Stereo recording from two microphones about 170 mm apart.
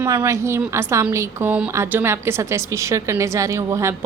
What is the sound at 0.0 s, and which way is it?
A woman's voice, 15° right (ahead or behind).